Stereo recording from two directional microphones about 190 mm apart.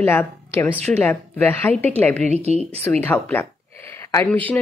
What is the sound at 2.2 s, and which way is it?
Speech, 35° right (ahead or behind).